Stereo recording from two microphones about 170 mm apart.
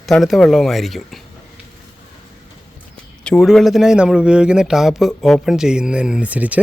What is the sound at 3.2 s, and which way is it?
Speech, 5° left (ahead or behind).